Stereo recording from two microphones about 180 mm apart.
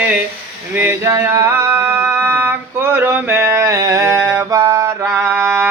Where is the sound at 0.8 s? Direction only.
15° right (ahead or behind).